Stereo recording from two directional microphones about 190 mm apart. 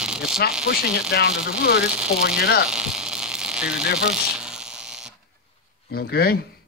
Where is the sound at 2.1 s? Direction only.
55° left (ahead or behind).